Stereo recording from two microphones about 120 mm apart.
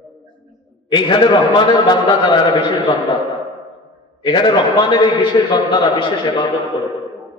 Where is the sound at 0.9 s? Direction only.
40° left (ahead or behind).